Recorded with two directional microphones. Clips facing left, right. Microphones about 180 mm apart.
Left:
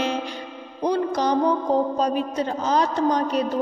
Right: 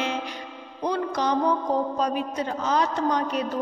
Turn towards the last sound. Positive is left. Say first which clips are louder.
# left 3 dB
turn(degrees=35)  # may be behind; listen again after turning